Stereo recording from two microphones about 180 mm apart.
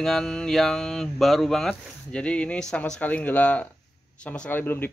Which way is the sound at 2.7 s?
5° left (ahead or behind).